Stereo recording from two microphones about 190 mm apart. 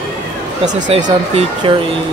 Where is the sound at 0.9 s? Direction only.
30° right (ahead or behind).